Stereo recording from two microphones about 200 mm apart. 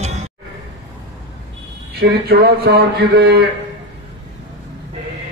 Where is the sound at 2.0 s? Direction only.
55° right (ahead or behind).